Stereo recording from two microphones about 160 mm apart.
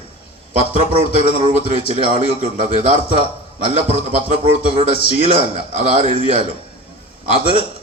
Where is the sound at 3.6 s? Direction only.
40° right (ahead or behind).